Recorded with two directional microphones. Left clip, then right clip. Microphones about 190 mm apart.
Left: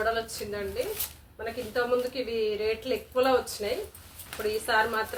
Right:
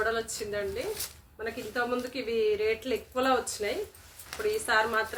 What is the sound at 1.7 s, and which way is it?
A woman's voice, 15° right (ahead or behind).